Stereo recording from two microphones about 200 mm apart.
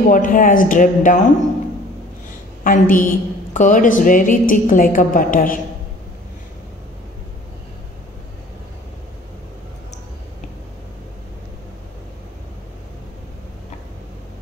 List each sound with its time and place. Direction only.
0.1 s a woman's voice: 40° left (ahead or behind)
2.6 s a woman's voice: 40° left (ahead or behind)